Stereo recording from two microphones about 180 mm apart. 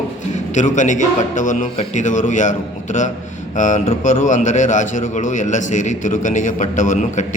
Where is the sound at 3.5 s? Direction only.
45° left (ahead or behind).